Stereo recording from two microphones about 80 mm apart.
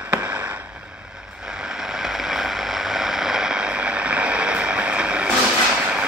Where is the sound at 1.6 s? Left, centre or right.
Centre.